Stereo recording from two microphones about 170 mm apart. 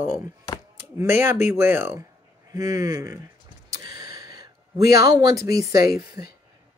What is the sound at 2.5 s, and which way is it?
Speech, 20° right (ahead or behind).